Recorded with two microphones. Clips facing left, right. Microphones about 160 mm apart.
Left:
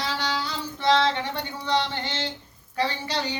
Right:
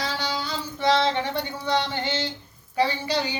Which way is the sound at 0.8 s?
15° right (ahead or behind).